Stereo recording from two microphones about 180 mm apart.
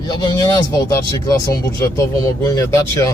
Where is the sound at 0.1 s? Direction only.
20° left (ahead or behind).